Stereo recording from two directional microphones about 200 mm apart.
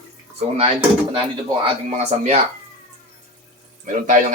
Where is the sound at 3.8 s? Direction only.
40° right (ahead or behind).